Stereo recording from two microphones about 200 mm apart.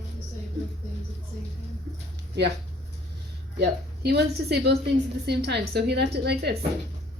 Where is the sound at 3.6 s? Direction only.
55° right (ahead or behind).